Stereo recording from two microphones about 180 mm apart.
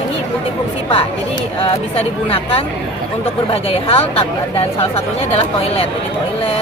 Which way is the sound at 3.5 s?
30° left (ahead or behind).